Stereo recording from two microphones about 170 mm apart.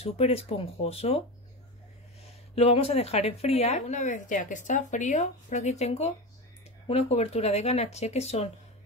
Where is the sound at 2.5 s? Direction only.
35° left (ahead or behind).